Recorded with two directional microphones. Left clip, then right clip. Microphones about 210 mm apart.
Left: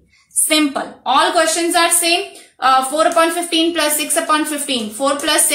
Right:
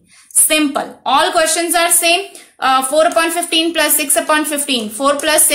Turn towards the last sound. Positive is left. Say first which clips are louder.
# right 3 dB
turn(degrees=-50)  # may be behind; listen again after turning